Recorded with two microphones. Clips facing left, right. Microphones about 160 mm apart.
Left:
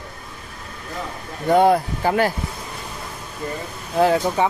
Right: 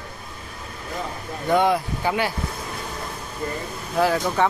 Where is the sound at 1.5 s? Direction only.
40° left (ahead or behind).